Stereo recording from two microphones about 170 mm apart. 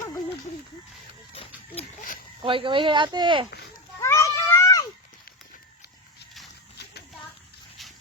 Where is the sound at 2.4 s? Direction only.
30° right (ahead or behind).